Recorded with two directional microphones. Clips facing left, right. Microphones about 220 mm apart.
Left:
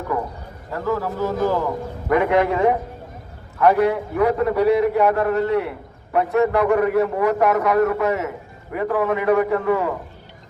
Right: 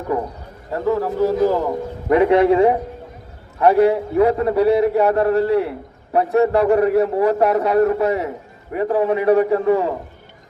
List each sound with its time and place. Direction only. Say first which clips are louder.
0.7 s a man's voice: right 4 dB; 30° right (ahead or behind)